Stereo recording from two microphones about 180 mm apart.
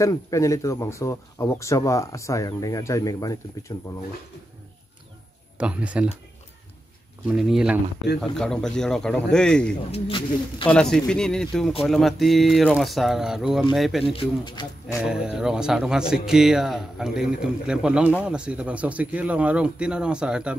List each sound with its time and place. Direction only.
0.0 s speech: 15° left (ahead or behind)
5.6 s speech: 5° right (ahead or behind)
7.2 s speech: 5° right (ahead or behind)
9.8 s speech: 35° left (ahead or behind)
10.7 s speech: 5° left (ahead or behind)
14.1 s speech: 30° left (ahead or behind)
15.0 s speech: 5° right (ahead or behind)